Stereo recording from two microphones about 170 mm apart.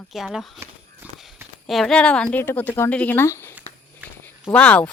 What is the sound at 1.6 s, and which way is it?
A woman's voice, centre (ahead or behind).